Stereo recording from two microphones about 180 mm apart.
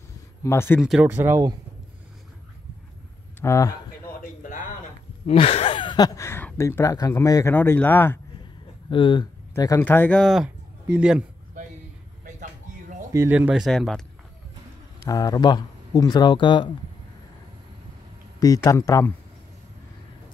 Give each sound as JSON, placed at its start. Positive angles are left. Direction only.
{"t": 0.4, "sound": "speech", "side_deg": 15}
{"t": 0.7, "sound": "speech", "side_deg": -5}
{"t": 3.3, "sound": "speech", "side_deg": 15}
{"t": 4.2, "sound": "a sound", "side_deg": 50}
{"t": 5.2, "sound": "speech", "side_deg": 35}
{"t": 8.9, "sound": "speech", "side_deg": 25}
{"t": 9.6, "sound": "speech", "side_deg": 15}
{"t": 13.1, "sound": "speech", "side_deg": -10}
{"t": 15.0, "sound": "speech", "side_deg": 20}
{"t": 18.4, "sound": "speech", "side_deg": 20}